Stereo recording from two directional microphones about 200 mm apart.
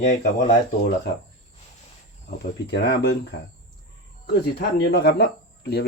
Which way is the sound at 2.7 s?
60° left (ahead or behind).